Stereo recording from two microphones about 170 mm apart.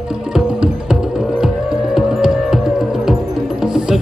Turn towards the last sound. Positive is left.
turn(degrees=-5)  # may be behind; listen again after turning